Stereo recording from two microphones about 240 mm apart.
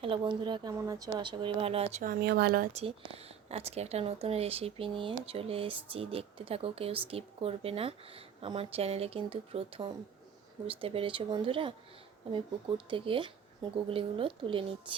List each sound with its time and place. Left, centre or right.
0.0 s speech: right
2.8 s speech: right